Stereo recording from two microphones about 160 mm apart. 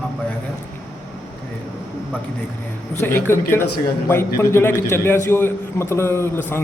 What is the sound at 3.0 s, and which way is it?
A man's voice, 15° left (ahead or behind).